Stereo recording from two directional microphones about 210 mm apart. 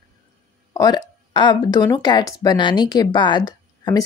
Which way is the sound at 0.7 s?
20° left (ahead or behind).